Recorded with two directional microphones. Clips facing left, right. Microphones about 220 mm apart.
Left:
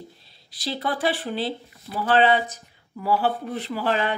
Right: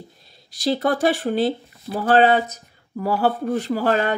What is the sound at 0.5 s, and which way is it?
Speech, 45° right (ahead or behind).